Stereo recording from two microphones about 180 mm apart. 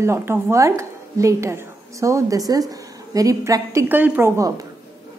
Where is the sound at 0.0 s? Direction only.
15° right (ahead or behind).